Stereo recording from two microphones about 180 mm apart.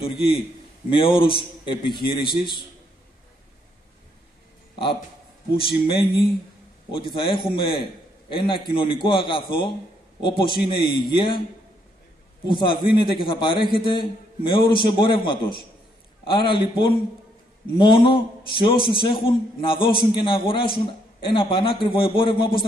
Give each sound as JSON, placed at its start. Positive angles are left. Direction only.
{"t": 0.0, "sound": "a man's voice", "side_deg": 30}
{"t": 5.5, "sound": "a man's voice", "side_deg": 30}
{"t": 12.4, "sound": "a man's voice", "side_deg": 25}